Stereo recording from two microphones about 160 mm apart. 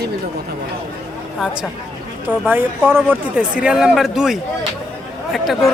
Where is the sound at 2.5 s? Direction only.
15° right (ahead or behind).